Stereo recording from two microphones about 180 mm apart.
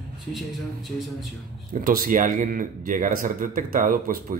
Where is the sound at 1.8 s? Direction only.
50° right (ahead or behind).